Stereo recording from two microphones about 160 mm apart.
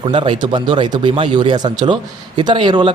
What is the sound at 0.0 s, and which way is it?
A man's voice, 30° right (ahead or behind).